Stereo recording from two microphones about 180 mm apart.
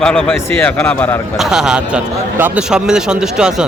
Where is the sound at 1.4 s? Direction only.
5° right (ahead or behind).